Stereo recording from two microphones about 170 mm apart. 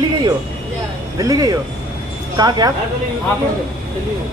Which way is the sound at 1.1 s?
20° right (ahead or behind).